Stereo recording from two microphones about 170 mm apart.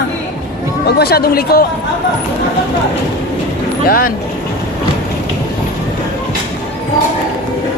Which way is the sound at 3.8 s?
60° left (ahead or behind).